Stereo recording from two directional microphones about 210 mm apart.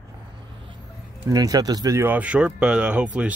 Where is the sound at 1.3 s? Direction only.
15° right (ahead or behind).